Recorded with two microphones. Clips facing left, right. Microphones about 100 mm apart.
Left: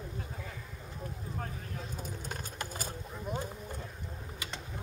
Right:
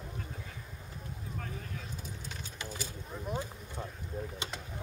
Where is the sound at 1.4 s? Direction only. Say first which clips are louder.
Left 2 dB; 45° left (ahead or behind).